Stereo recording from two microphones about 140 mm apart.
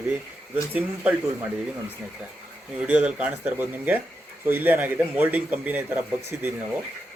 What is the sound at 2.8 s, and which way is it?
A man's voice, 10° right (ahead or behind).